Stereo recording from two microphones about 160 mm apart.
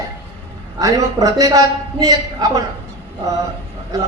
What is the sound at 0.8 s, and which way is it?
A woman's voice, 20° right (ahead or behind).